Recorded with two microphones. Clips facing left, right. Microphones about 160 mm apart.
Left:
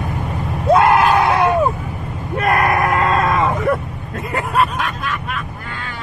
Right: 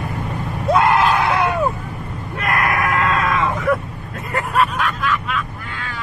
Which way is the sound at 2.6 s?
35° left (ahead or behind).